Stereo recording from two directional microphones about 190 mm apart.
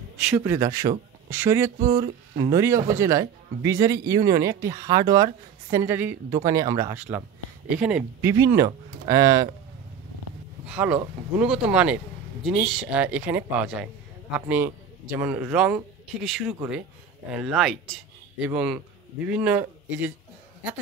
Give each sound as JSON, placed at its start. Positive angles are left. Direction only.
{"t": 0.4, "sound": "speech", "side_deg": -15}
{"t": 1.8, "sound": "speech", "side_deg": -45}
{"t": 2.5, "sound": "speech", "side_deg": -15}
{"t": 10.7, "sound": "a man's voice", "side_deg": -5}
{"t": 16.5, "sound": "speech", "side_deg": -10}